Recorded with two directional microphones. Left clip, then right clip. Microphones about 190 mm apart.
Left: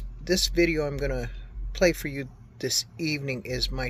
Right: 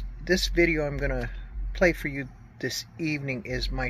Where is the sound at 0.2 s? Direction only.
15° left (ahead or behind).